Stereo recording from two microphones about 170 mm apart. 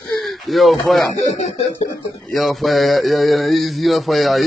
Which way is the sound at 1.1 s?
45° left (ahead or behind).